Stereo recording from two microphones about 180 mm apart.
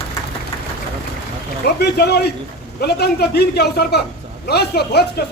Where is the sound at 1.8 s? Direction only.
65° left (ahead or behind).